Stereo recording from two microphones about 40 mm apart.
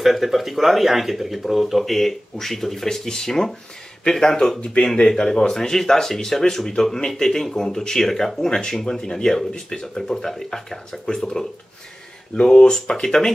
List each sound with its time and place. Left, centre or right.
0.0 s speech: centre
4.6 s speech: left